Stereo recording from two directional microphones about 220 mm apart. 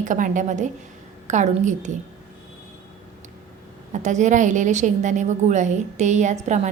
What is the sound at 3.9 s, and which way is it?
A woman's voice, 35° right (ahead or behind).